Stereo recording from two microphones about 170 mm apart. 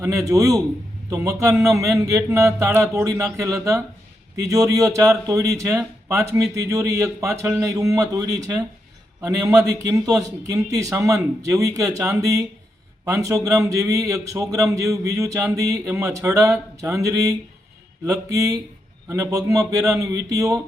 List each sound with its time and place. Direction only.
0.0 s a man's voice: 20° right (ahead or behind)